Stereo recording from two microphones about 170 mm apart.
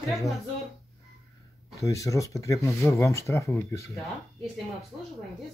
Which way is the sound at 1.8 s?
20° left (ahead or behind).